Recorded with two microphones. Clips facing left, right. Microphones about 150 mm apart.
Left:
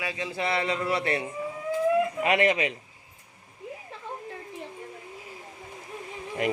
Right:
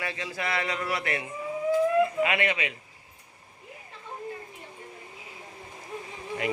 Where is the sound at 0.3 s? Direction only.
25° left (ahead or behind).